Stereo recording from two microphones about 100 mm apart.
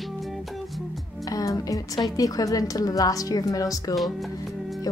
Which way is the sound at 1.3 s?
35° left (ahead or behind).